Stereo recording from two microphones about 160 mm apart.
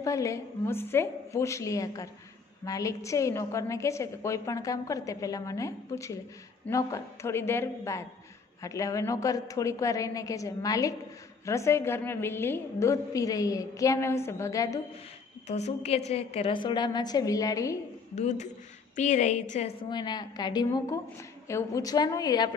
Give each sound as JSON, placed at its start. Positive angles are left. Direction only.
{"t": 0.0, "sound": "a woman's voice", "side_deg": 20}
{"t": 15.4, "sound": "a woman's voice", "side_deg": 45}
{"t": 18.1, "sound": "a woman's voice", "side_deg": 45}
{"t": 19.8, "sound": "a woman's voice", "side_deg": 30}